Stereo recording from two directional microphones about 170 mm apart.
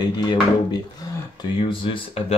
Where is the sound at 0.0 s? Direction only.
25° left (ahead or behind).